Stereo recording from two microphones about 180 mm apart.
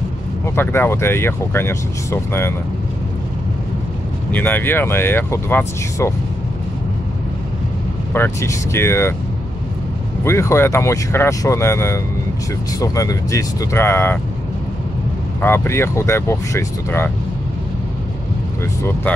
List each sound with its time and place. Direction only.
0.6 s speech: 15° left (ahead or behind)
4.3 s speech: 10° left (ahead or behind)
8.1 s speech: 15° left (ahead or behind)
10.2 s speech: 15° left (ahead or behind)
15.4 s speech: 15° left (ahead or behind)
18.6 s speech: 15° left (ahead or behind)